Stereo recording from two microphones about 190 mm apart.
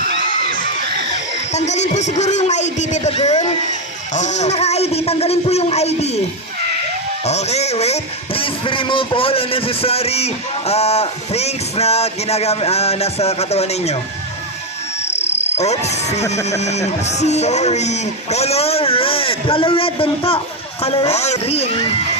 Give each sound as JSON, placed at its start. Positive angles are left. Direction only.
{"t": 1.5, "sound": "speech", "side_deg": 35}
{"t": 7.3, "sound": "speech", "side_deg": 35}
{"t": 15.0, "sound": "frog", "side_deg": 35}
{"t": 16.6, "sound": "speech", "side_deg": 35}